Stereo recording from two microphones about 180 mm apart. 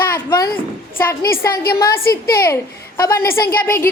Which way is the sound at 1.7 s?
55° left (ahead or behind).